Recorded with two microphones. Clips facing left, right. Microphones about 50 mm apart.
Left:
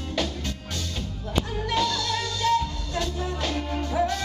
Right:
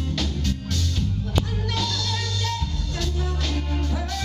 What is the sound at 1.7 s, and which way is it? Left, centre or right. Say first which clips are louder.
Music: left 4 dB; centre.